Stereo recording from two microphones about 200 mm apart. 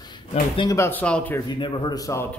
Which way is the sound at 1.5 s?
25° left (ahead or behind).